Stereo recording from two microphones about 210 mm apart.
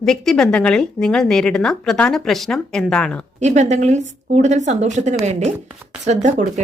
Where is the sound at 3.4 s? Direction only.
35° right (ahead or behind).